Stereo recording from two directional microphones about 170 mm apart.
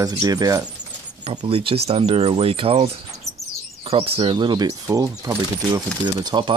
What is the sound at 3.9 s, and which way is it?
Speech, 35° right (ahead or behind).